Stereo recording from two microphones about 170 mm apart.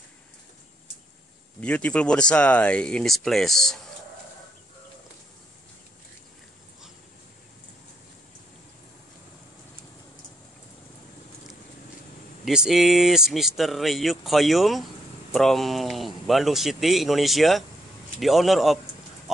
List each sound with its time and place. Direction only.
1.6 s speech: 5° left (ahead or behind)
12.4 s speech: centre (ahead or behind)